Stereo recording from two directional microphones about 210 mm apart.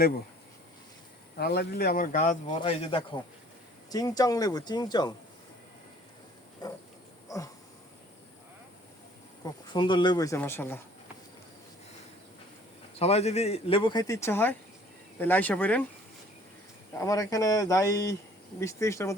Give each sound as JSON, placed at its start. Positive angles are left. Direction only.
{"t": 1.4, "sound": "speech", "side_deg": 50}
{"t": 2.5, "sound": "speech", "side_deg": 25}
{"t": 6.6, "sound": "pig", "side_deg": 20}
{"t": 7.3, "sound": "a sound", "side_deg": 15}
{"t": 9.4, "sound": "speech", "side_deg": 20}
{"t": 13.0, "sound": "speech", "side_deg": 30}
{"t": 17.0, "sound": "speech", "side_deg": 15}